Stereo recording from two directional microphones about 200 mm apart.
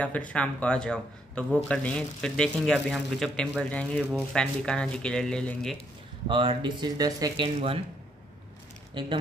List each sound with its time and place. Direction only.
0.0 s a man's voice: 5° left (ahead or behind)
6.2 s speech: 25° right (ahead or behind)